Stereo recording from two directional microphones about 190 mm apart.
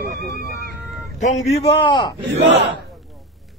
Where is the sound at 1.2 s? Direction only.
35° left (ahead or behind).